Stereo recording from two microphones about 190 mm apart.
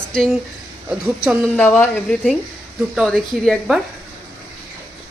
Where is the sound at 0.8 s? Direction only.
5° right (ahead or behind).